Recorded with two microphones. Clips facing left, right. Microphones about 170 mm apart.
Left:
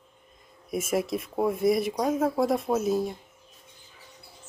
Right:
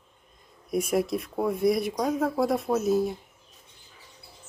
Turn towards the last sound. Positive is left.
turn(degrees=0)  # may be behind; listen again after turning